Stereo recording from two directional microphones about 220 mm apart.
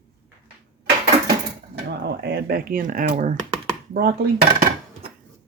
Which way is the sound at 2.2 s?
45° right (ahead or behind).